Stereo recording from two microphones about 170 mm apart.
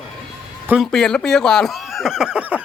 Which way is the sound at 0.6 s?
Centre (ahead or behind).